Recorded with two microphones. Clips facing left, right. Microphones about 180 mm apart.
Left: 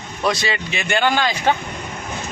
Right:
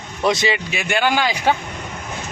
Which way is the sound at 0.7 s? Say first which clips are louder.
Left 4 dB; 10° right (ahead or behind).